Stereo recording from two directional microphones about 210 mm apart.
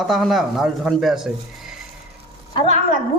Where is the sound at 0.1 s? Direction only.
Centre (ahead or behind).